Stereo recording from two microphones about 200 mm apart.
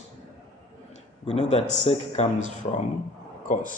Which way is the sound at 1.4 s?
35° left (ahead or behind).